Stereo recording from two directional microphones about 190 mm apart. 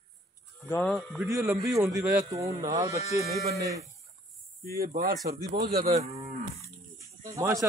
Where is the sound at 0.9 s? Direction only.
Centre (ahead or behind).